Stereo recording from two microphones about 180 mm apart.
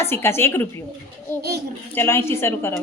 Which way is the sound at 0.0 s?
15° left (ahead or behind).